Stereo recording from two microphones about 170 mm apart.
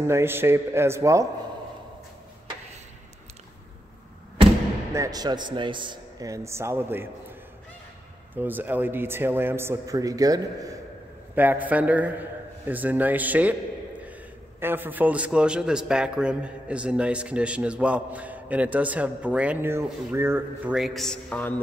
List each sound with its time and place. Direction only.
0.0 s a man's voice: 15° right (ahead or behind)
4.9 s a man's voice: 20° right (ahead or behind)
8.4 s a man's voice: 10° right (ahead or behind)
11.3 s a man's voice: 10° right (ahead or behind)
14.6 s a man's voice: 10° right (ahead or behind); by 21.5 s 10° left (ahead or behind)